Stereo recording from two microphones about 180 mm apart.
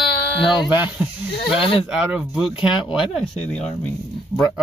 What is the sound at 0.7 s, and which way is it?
Speech, 10° right (ahead or behind).